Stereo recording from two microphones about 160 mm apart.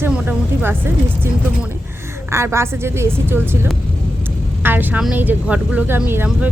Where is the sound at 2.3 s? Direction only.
15° right (ahead or behind).